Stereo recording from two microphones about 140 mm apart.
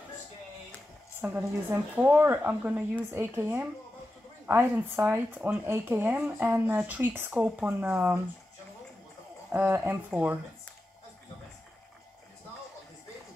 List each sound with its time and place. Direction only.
1.2 s speech: 10° right (ahead or behind)
9.5 s speech: 15° right (ahead or behind)